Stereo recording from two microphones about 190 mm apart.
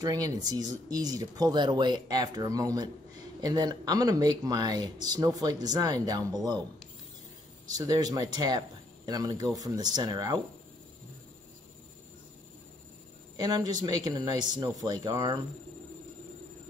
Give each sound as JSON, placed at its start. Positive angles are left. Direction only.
{"t": 0.0, "sound": "speech", "side_deg": -20}
{"t": 7.7, "sound": "speech", "side_deg": -20}
{"t": 13.4, "sound": "speech", "side_deg": -20}